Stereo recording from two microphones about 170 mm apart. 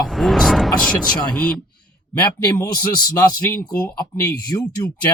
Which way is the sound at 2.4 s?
20° left (ahead or behind).